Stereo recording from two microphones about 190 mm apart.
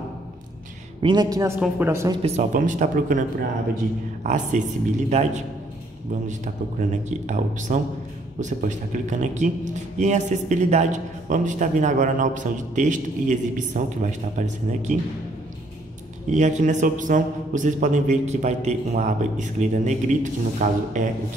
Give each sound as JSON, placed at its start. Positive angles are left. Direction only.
{"t": 1.0, "sound": "a man's voice", "side_deg": -20}
{"t": 2.2, "sound": "a man's voice", "side_deg": -40}
{"t": 16.3, "sound": "a man's voice", "side_deg": -40}